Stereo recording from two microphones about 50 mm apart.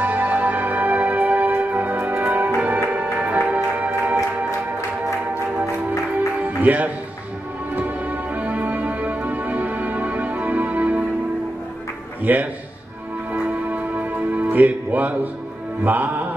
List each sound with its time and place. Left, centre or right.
0.0 s music: right
6.4 s music: right
12.2 s a man's voice: right
13.3 s music: right